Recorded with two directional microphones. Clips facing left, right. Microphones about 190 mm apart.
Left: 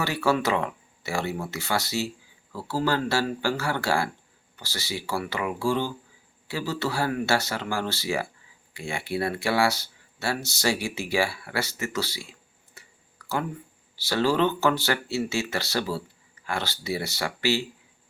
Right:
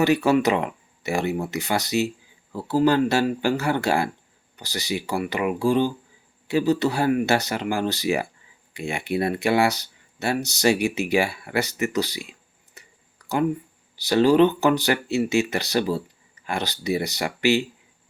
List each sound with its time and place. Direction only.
0.0 s speech: 20° right (ahead or behind)
12.8 s clicking: 20° right (ahead or behind)
13.2 s a sound: 20° right (ahead or behind)
13.9 s speech: 15° right (ahead or behind)